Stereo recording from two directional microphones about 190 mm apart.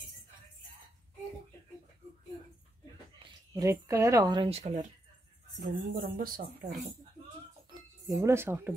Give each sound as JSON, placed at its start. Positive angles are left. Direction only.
{"t": 3.2, "sound": "speech", "side_deg": -20}
{"t": 5.6, "sound": "speech", "side_deg": -45}
{"t": 8.1, "sound": "speech", "side_deg": -15}